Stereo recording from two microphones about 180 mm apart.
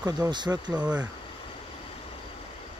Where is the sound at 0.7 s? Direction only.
5° right (ahead or behind).